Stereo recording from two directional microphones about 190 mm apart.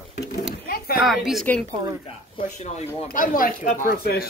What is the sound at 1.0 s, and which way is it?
Speech, centre (ahead or behind).